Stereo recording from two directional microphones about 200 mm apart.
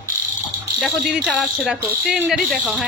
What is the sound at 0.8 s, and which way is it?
Speech, centre (ahead or behind).